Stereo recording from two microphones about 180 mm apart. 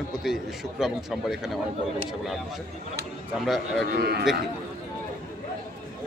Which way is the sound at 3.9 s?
60° right (ahead or behind).